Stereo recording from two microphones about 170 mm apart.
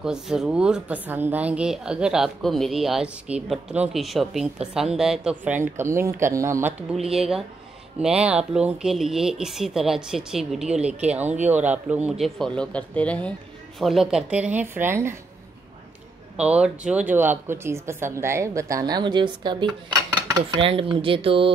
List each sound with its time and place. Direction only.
0.0 s speech: 5° right (ahead or behind)
7.1 s speech: centre (ahead or behind)
16.3 s speech: 5° right (ahead or behind); by 19.7 s 25° right (ahead or behind)
20.2 s cutlery: 20° right (ahead or behind)
20.6 s speech: 30° right (ahead or behind)